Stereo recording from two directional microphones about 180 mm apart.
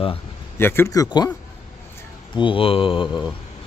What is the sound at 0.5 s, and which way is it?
Speech, 10° left (ahead or behind).